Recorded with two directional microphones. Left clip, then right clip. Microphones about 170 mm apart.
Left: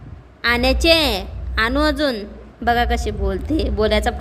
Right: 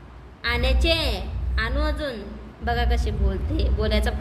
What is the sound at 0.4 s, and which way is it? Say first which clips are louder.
A woman's voice: left 8 dB; 55° left (ahead or behind).